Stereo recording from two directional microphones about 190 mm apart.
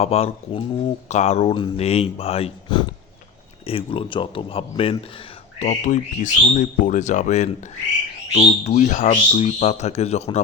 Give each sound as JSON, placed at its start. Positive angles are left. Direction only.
{"t": 0.0, "sound": "speech", "side_deg": 35}